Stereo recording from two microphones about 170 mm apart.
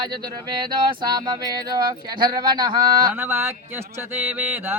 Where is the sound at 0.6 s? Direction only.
25° right (ahead or behind).